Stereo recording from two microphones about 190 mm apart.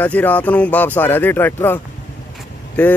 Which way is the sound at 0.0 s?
10° left (ahead or behind).